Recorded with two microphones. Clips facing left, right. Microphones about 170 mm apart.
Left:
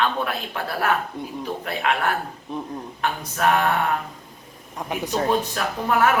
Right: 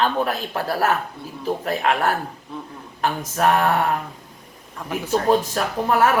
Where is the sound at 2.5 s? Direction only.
20° left (ahead or behind).